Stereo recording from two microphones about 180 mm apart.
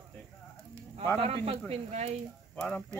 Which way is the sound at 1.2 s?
35° right (ahead or behind).